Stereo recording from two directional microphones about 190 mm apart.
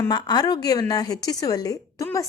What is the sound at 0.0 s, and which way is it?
A woman's voice, 20° left (ahead or behind).